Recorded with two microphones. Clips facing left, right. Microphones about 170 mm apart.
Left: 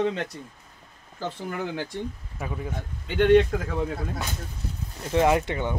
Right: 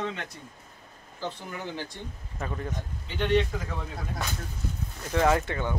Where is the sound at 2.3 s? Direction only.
5° left (ahead or behind).